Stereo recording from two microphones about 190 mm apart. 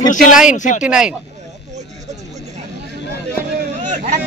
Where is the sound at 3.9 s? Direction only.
40° right (ahead or behind).